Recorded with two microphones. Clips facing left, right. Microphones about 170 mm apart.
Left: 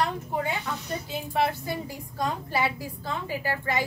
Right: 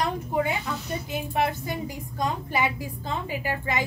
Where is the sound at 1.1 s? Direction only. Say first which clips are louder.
Even; 15° right (ahead or behind).